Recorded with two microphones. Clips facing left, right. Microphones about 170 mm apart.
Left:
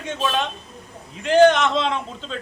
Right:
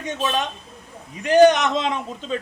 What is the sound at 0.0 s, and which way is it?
A man's voice, 15° right (ahead or behind).